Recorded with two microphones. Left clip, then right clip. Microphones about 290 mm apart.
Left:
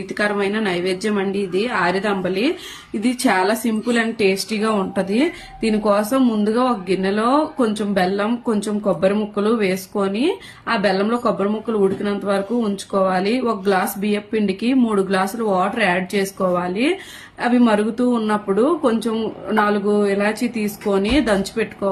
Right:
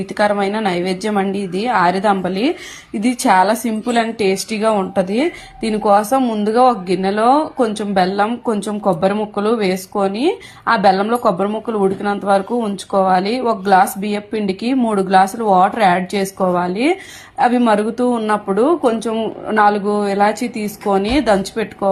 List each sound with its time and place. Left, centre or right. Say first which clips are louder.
0.2 s a woman's voice: right 4 dB; centre
9.3 s a woman's voice: right 2 dB; centre